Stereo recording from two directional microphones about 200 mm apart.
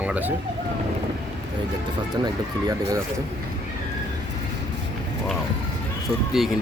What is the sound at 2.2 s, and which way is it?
Speech, 20° right (ahead or behind).